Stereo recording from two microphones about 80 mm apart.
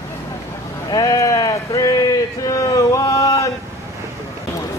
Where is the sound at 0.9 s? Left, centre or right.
Left.